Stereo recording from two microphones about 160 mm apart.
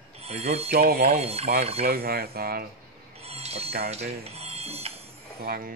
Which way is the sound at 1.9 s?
75° right (ahead or behind).